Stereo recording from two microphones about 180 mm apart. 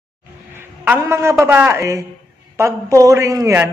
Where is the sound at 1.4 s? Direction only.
15° right (ahead or behind).